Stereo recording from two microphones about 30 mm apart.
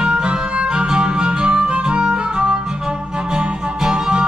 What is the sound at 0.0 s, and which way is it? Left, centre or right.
Music, right.